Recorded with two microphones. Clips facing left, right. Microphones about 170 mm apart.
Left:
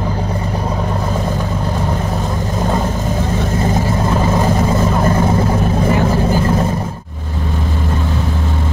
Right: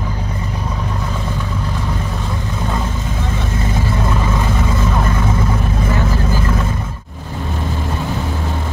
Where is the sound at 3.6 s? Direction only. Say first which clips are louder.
Left 2 dB; 40° left (ahead or behind).